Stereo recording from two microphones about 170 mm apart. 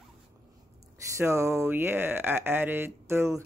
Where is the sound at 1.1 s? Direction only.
15° right (ahead or behind).